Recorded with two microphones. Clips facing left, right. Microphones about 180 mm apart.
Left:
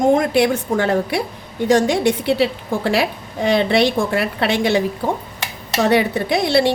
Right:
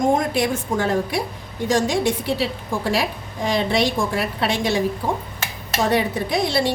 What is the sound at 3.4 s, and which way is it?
A woman's voice, 65° left (ahead or behind).